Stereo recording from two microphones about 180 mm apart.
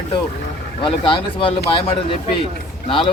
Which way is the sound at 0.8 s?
30° left (ahead or behind).